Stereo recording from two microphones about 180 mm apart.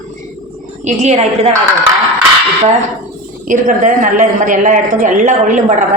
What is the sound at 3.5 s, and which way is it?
A woman's voice, 45° right (ahead or behind).